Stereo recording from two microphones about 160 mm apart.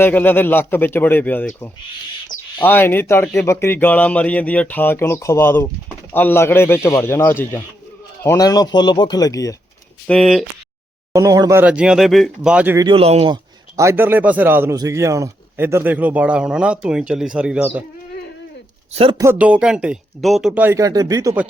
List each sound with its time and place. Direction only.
0.0 s speech: 10° left (ahead or behind)
2.6 s speech: 10° left (ahead or behind)
10.1 s speech: centre (ahead or behind)
11.1 s speech: 20° right (ahead or behind)
11.6 s speech: 5° right (ahead or behind)
12.7 s speech: 30° right (ahead or behind)
13.7 s speech: 15° right (ahead or behind)
18.9 s speech: 35° right (ahead or behind)
19.2 s speech: 10° right (ahead or behind)
20.5 s speech: 15° right (ahead or behind)